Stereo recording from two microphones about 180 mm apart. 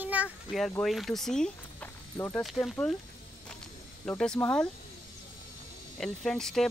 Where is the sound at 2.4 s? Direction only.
Centre (ahead or behind).